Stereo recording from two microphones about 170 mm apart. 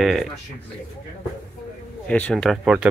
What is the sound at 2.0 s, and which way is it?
Speech, 10° left (ahead or behind).